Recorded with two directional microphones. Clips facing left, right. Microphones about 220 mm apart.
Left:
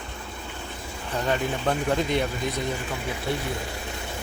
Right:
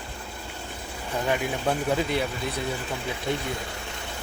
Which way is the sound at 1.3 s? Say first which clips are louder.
Left 1 dB; 5° right (ahead or behind).